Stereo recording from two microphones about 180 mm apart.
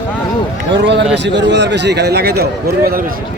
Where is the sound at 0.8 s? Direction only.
80° right; by 2.4 s 65° right (ahead or behind).